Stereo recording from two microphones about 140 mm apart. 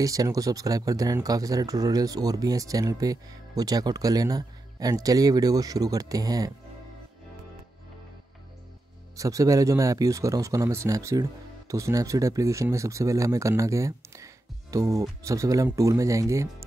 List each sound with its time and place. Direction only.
0.0 s speech: 25° right (ahead or behind)
9.1 s speech: 25° right (ahead or behind)